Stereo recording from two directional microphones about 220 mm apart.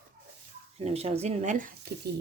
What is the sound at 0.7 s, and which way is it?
Speech, 30° right (ahead or behind).